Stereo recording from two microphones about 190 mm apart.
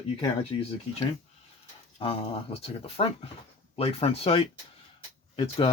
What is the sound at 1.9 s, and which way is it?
Speech, 30° left (ahead or behind).